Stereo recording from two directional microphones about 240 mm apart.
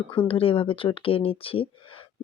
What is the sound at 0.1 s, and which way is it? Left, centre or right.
Speech, left.